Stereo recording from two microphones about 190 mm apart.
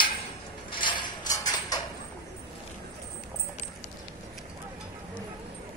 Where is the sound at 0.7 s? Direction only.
25° left (ahead or behind).